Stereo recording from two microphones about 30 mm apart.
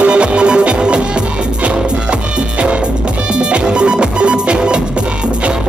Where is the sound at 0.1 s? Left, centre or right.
Right.